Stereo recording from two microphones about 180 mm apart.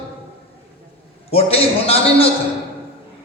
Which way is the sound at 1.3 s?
35° left (ahead or behind).